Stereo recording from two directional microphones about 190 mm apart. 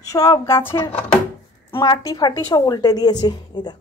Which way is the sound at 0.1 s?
15° left (ahead or behind).